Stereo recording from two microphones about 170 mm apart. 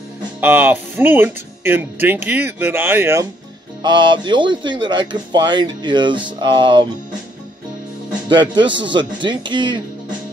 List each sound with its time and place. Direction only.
0.4 s speech: 10° right (ahead or behind)
3.8 s speech: 25° right (ahead or behind)
8.3 s speech: 25° right (ahead or behind)